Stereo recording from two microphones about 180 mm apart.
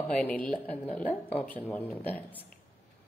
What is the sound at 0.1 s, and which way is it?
A woman's voice, 5° left (ahead or behind).